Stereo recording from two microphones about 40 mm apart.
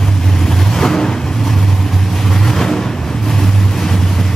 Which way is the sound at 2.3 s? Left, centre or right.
Centre.